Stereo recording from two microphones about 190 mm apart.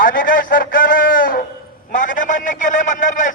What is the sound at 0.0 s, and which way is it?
A man's voice, 45° left (ahead or behind).